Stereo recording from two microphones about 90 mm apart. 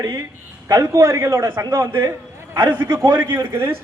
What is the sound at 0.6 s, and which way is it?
A man's voice, 35° right (ahead or behind).